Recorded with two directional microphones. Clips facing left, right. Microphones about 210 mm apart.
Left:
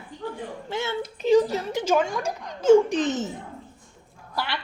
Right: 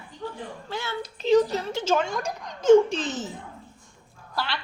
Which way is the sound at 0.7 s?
25° left (ahead or behind).